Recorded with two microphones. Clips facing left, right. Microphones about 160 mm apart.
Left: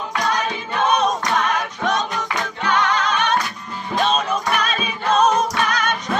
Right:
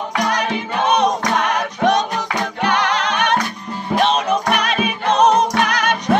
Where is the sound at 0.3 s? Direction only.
70° right (ahead or behind).